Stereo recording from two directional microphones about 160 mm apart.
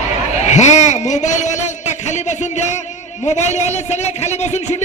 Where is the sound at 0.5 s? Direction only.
45° left (ahead or behind).